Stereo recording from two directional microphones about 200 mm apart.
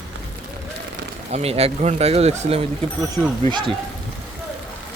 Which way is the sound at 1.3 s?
30° right (ahead or behind).